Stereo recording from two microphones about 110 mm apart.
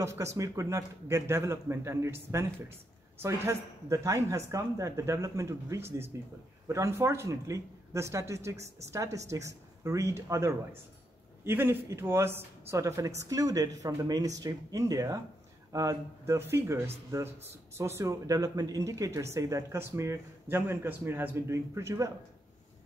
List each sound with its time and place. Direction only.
0.0 s speech: 25° right (ahead or behind)